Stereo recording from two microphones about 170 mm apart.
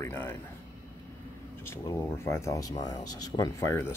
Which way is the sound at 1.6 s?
15° left (ahead or behind).